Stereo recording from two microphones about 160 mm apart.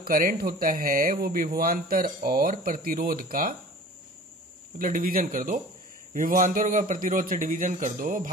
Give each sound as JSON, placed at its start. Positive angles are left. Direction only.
{"t": 0.0, "sound": "speech", "side_deg": -65}
{"t": 4.7, "sound": "speech", "side_deg": -60}